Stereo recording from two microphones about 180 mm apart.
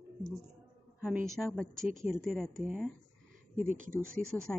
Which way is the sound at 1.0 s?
5° right (ahead or behind).